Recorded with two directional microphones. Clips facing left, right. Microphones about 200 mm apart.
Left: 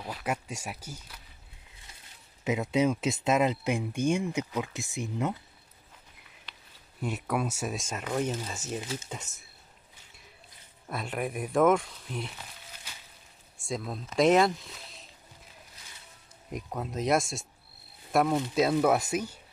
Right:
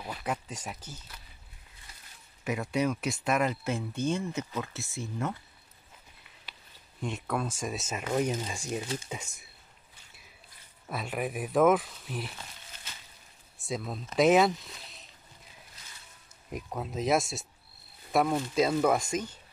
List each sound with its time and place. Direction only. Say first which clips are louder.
0.0 s speech: left 1 dB; 5° left (ahead or behind)
2.4 s speech: left 3 dB; 20° left (ahead or behind)
7.0 s speech: left 2 dB; 5° left (ahead or behind)
7.7 s speech: right 1 dB; 5° right (ahead or behind)
10.9 s speech: even; centre (ahead or behind)
13.6 s speech: even; centre (ahead or behind)
16.5 s speech: left 1 dB; centre (ahead or behind)